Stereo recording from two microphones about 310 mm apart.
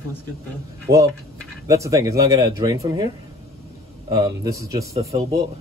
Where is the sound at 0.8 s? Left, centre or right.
Centre.